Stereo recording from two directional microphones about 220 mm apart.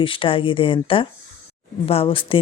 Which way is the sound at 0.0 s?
25° left (ahead or behind).